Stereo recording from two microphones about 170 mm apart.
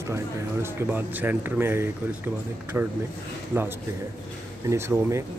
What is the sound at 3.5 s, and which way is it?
Speech, 10° right (ahead or behind).